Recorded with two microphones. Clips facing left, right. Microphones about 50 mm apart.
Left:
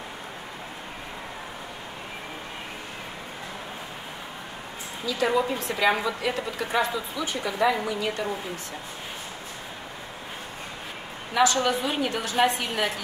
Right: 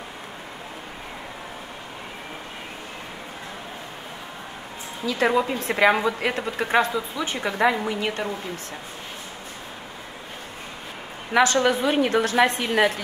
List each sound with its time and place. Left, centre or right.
5.0 s a woman's voice: right
11.3 s a woman's voice: right